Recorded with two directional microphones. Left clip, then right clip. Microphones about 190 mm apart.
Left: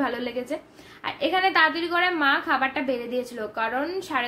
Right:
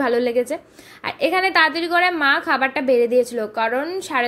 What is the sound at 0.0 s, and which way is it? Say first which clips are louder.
A woman's voice: right 9 dB; 40° right (ahead or behind).